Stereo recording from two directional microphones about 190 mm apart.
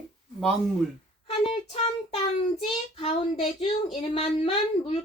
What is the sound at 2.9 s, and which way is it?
Speech, 30° left (ahead or behind).